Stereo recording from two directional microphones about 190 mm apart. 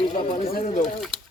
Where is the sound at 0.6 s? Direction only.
35° left (ahead or behind).